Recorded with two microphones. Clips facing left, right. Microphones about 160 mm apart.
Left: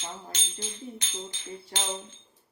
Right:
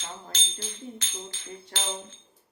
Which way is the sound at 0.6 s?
15° left (ahead or behind).